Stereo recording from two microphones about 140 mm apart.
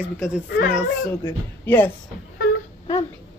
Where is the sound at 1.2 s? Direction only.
15° left (ahead or behind).